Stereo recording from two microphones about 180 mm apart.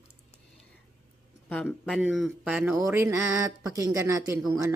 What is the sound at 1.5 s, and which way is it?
Speech, 5° left (ahead or behind).